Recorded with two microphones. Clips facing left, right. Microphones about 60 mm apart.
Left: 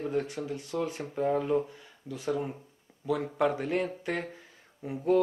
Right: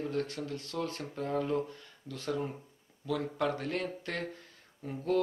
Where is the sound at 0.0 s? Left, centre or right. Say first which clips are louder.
Left 3 dB; centre.